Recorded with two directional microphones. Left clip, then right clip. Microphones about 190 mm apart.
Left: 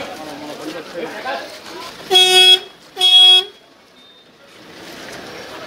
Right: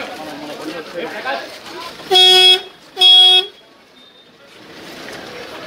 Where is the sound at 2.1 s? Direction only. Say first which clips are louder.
Right 2 dB; 35° left (ahead or behind).